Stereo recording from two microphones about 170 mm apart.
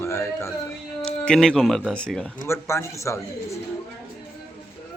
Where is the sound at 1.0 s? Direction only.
5° left (ahead or behind).